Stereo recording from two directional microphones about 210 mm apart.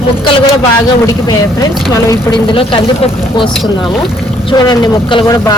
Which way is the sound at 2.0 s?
20° left (ahead or behind).